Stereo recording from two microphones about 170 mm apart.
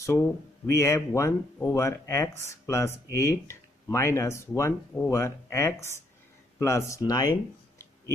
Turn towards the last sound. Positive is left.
turn(degrees=20)  # may be behind; listen again after turning